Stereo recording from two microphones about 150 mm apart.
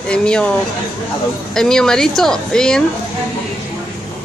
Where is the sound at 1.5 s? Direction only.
5° left (ahead or behind).